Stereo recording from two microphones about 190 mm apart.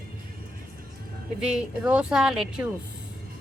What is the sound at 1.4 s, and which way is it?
Speech, 5° right (ahead or behind).